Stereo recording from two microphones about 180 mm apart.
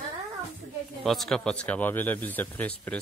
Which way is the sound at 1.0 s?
Centre (ahead or behind).